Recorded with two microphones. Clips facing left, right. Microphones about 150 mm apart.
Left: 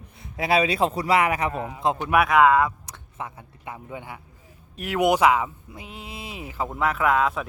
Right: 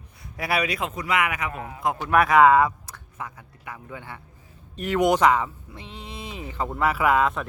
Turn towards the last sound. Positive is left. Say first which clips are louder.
# right 1 dB
turn(degrees=0)  # may be behind; listen again after turning